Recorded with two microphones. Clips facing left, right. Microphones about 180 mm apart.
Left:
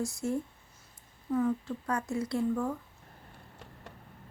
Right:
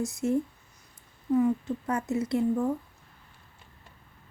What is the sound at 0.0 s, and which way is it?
A woman's voice, 20° right (ahead or behind).